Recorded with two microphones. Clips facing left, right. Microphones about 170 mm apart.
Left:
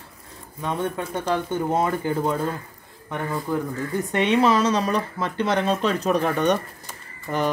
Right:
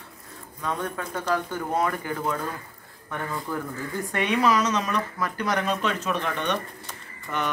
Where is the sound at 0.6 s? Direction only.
25° left (ahead or behind).